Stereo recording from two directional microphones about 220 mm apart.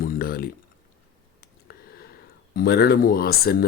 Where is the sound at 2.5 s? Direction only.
45° left (ahead or behind).